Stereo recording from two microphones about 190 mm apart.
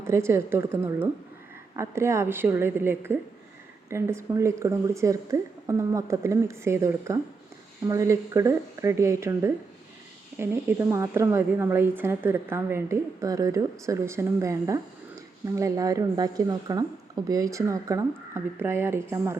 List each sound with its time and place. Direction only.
0.0 s a woman's voice: 15° right (ahead or behind)